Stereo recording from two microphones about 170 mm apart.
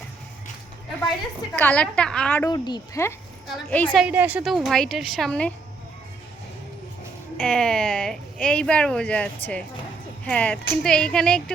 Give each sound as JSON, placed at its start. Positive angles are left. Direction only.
{"t": 1.5, "sound": "a woman's voice", "side_deg": 10}
{"t": 2.5, "sound": "a woman's voice", "side_deg": 25}
{"t": 4.0, "sound": "a woman's voice", "side_deg": -10}
{"t": 4.4, "sound": "speech", "side_deg": 0}
{"t": 7.3, "sound": "speech", "side_deg": 5}